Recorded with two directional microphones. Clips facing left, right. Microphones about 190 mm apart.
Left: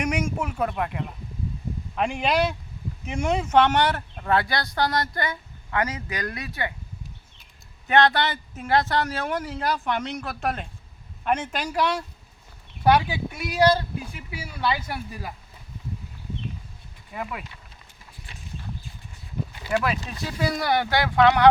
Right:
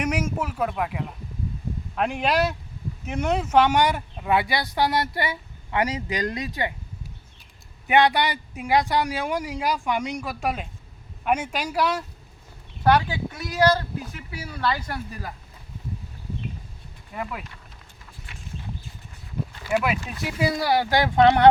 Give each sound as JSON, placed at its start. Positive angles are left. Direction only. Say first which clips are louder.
{"t": 0.0, "sound": "speech", "louder": "even", "side_deg": -5}
{"t": 7.9, "sound": "speech", "louder": "right 1 dB", "side_deg": -15}
{"t": 12.8, "sound": "speech", "louder": "even", "side_deg": 10}
{"t": 13.6, "sound": "speech", "louder": "left 1 dB", "side_deg": 25}
{"t": 14.3, "sound": "speech", "louder": "even", "side_deg": 10}
{"t": 17.1, "sound": "speech", "louder": "right 1 dB", "side_deg": 5}
{"t": 19.7, "sound": "speech", "louder": "right 1 dB", "side_deg": -15}